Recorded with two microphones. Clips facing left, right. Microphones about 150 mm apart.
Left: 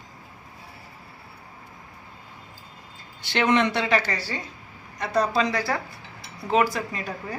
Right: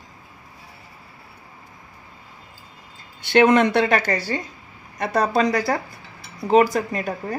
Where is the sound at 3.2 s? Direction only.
50° right (ahead or behind).